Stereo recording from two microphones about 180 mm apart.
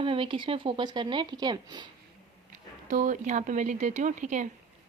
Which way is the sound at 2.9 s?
45° right (ahead or behind).